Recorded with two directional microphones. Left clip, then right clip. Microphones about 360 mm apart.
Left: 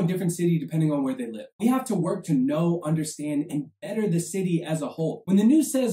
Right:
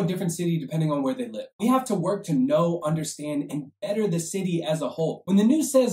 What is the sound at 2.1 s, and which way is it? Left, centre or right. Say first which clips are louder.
Speech: right 3 dB; centre.